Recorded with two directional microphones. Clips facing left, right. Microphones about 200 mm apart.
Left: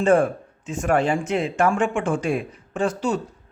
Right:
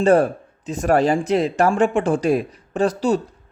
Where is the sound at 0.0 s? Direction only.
35° right (ahead or behind).